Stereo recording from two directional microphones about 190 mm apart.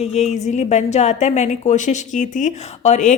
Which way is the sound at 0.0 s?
35° left (ahead or behind).